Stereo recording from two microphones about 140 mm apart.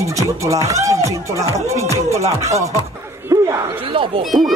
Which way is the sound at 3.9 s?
40° right (ahead or behind).